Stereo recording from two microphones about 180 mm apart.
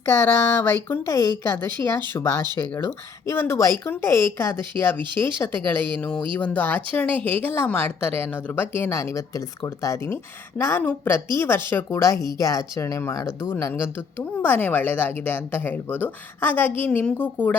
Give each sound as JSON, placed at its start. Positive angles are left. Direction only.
{"t": 0.0, "sound": "a woman's voice", "side_deg": 15}